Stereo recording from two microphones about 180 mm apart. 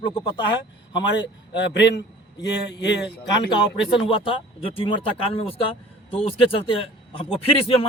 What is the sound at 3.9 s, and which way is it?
A man's voice, 30° left (ahead or behind).